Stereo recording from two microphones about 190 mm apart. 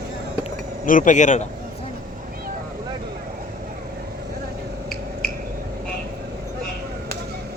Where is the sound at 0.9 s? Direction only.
45° left (ahead or behind).